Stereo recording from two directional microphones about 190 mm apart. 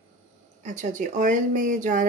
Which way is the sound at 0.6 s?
40° right (ahead or behind).